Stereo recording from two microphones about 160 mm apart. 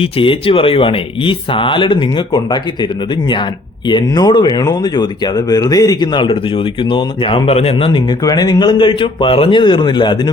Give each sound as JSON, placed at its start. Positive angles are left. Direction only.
{"t": 0.0, "sound": "speech", "side_deg": 35}
{"t": 3.8, "sound": "speech", "side_deg": 25}
{"t": 8.2, "sound": "speech", "side_deg": 25}